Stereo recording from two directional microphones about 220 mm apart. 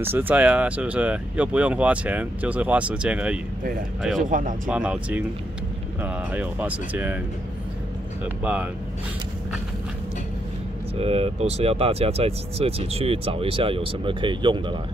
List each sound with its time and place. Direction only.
0.0 s speech: 10° right (ahead or behind)
4.3 s speech: 35° right (ahead or behind)
4.6 s speech: 5° right (ahead or behind)
11.0 s speech: 25° right (ahead or behind)